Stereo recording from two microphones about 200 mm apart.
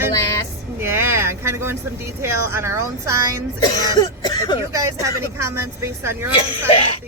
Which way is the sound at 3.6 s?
20° left (ahead or behind).